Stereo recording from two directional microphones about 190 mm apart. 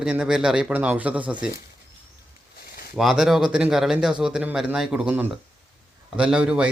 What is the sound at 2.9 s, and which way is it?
Speech, centre (ahead or behind).